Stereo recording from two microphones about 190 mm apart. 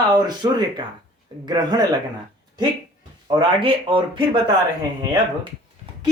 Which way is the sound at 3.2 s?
25° right (ahead or behind).